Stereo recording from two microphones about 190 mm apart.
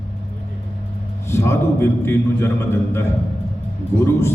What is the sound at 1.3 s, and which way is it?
A man's voice, 15° left (ahead or behind).